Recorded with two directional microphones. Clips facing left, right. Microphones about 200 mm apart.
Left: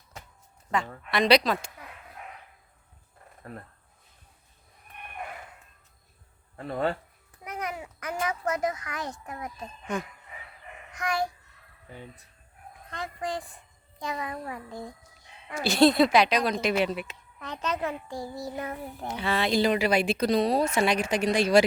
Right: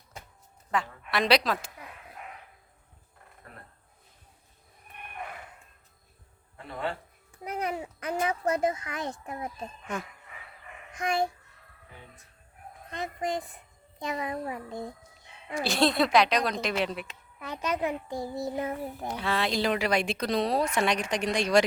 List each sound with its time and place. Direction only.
0.7 s a woman's voice: centre (ahead or behind)
6.6 s speech: 40° left (ahead or behind)
7.3 s a child's voice: 30° right (ahead or behind)
10.9 s a sound: 25° right (ahead or behind)
12.9 s a sound: 20° right (ahead or behind)
15.5 s speech: centre (ahead or behind)
17.4 s a child's voice: 10° right (ahead or behind)
18.1 s a sound: 25° right (ahead or behind)
19.0 s speech: centre (ahead or behind)